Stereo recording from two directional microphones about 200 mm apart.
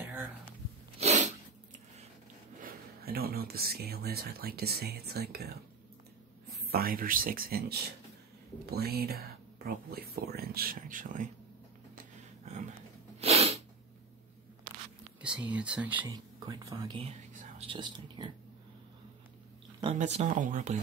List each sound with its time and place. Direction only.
0.0 s a sound: 10° right (ahead or behind)
0.9 s sneeze: 35° right (ahead or behind)
2.6 s speech: 50° right (ahead or behind)
6.6 s speech: 50° right (ahead or behind)
8.6 s speech: 50° right (ahead or behind)
13.2 s sneeze: 30° right (ahead or behind)
15.2 s speech: 5° right (ahead or behind)
16.1 s speech: 20° right (ahead or behind)
17.3 s whispering: 40° right (ahead or behind)
17.6 s speech: 25° right (ahead or behind)
20.0 s speech: 35° right (ahead or behind)